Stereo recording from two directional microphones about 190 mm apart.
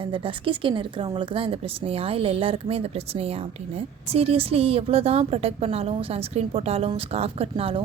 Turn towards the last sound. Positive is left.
turn(degrees=-30)  # may be behind; listen again after turning